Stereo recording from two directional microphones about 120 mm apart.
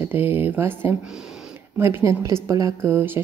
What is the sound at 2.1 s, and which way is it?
Speech, 25° right (ahead or behind).